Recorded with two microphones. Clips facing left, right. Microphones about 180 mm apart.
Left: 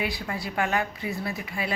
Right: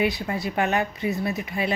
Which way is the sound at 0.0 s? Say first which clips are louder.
Right 6 dB; 20° right (ahead or behind).